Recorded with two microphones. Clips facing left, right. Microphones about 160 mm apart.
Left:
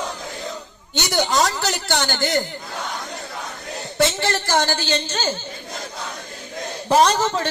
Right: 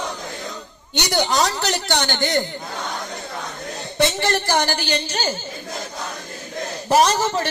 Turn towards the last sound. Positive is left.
turn(degrees=-10)  # may be behind; listen again after turning